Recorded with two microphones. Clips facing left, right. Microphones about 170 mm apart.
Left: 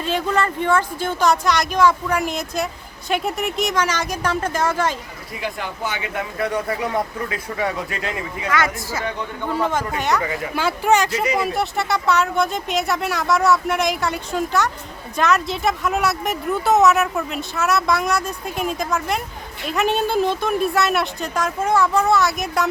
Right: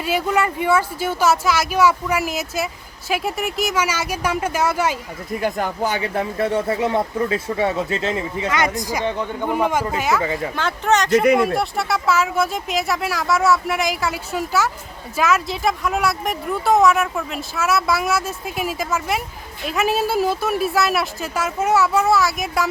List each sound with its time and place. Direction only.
0.0 s speech: 10° right (ahead or behind)
5.3 s speech: 45° right (ahead or behind); by 9.9 s 15° right (ahead or behind)
10.0 s speech: 5° right (ahead or behind)
10.5 s speech: 10° left (ahead or behind)
11.1 s speech: 55° right (ahead or behind)
11.3 s speech: centre (ahead or behind)